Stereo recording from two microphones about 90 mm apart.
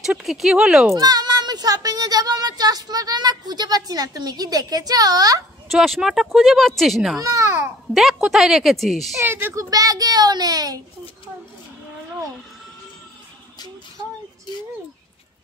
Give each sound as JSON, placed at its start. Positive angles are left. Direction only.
{"t": 0.0, "sound": "speech", "side_deg": -5}
{"t": 0.9, "sound": "speech", "side_deg": -45}
{"t": 5.7, "sound": "speech", "side_deg": -5}
{"t": 7.2, "sound": "babbling", "side_deg": -35}
{"t": 7.9, "sound": "speech", "side_deg": 0}
{"t": 9.2, "sound": "speech", "side_deg": -25}
{"t": 9.6, "sound": "a child's voice", "side_deg": -40}